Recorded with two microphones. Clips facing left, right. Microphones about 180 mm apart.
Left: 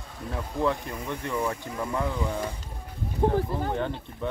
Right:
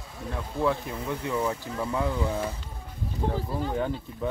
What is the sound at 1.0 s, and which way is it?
Speech, 5° right (ahead or behind).